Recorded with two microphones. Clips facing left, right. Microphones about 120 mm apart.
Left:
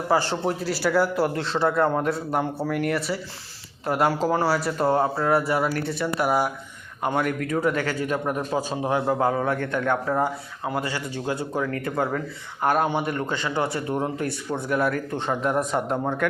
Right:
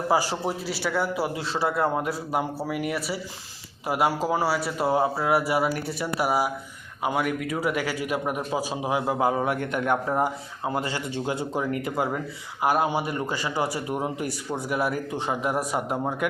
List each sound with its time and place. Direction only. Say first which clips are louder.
0.1 s a man's voice: left 3 dB; 5° right (ahead or behind)